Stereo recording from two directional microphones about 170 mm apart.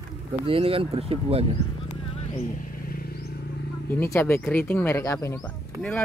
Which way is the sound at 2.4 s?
55° left (ahead or behind).